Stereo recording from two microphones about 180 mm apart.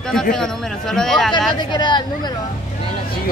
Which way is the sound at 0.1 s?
5° left (ahead or behind).